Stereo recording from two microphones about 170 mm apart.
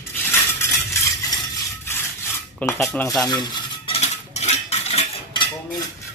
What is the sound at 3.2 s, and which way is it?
Cutlery, 25° left (ahead or behind).